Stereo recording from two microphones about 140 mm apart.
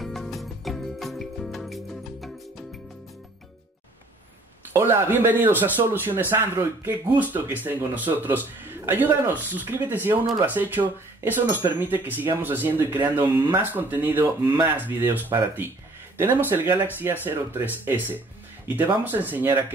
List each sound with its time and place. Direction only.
0.0 s music: centre (ahead or behind)
4.7 s speech: 15° right (ahead or behind)